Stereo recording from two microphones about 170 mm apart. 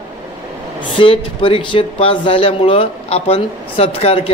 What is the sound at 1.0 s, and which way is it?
Speech, 30° left (ahead or behind).